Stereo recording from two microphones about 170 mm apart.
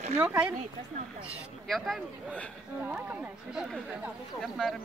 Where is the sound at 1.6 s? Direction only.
Centre (ahead or behind).